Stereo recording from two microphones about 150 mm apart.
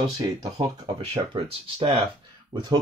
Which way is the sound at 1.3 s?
40° right (ahead or behind).